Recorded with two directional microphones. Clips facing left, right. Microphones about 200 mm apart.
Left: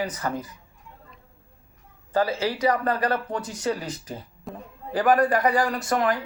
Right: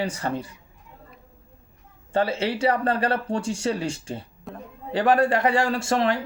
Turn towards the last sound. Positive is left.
turn(degrees=-25)  # may be behind; listen again after turning